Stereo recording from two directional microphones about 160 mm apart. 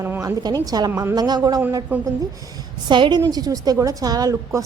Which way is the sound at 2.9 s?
30° right (ahead or behind).